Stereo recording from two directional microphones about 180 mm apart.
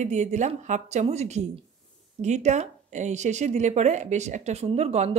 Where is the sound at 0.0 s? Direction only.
40° right (ahead or behind).